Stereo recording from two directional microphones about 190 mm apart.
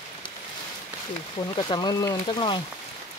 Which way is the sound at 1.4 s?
25° left (ahead or behind).